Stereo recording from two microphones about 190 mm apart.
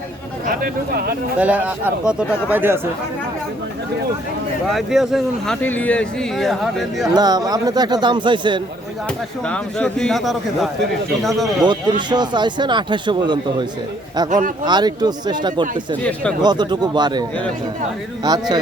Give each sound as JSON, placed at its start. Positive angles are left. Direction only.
{"t": 0.4, "sound": "speech", "side_deg": -50}
{"t": 1.4, "sound": "speech", "side_deg": -5}
{"t": 4.7, "sound": "speech", "side_deg": 0}
{"t": 5.6, "sound": "speech", "side_deg": 10}
{"t": 7.1, "sound": "speech", "side_deg": -20}
{"t": 9.5, "sound": "speech", "side_deg": 5}
{"t": 11.6, "sound": "speech", "side_deg": -25}
{"t": 14.3, "sound": "speech", "side_deg": -40}
{"t": 14.6, "sound": "speech", "side_deg": -20}